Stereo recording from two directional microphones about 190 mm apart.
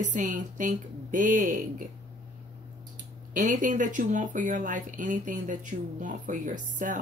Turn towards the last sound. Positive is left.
turn(degrees=-40)  # may be behind; listen again after turning